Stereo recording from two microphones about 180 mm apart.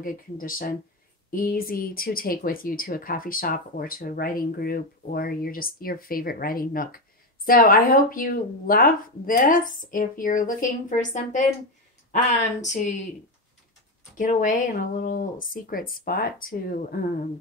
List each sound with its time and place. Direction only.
0.0 s a woman's voice: 50° left (ahead or behind)
14.1 s speech: 45° left (ahead or behind)